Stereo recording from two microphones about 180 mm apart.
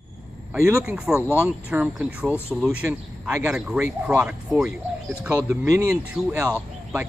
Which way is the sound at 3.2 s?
5° right (ahead or behind).